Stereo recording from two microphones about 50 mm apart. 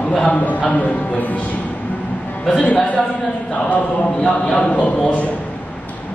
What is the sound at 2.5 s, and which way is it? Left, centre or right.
Speech, left.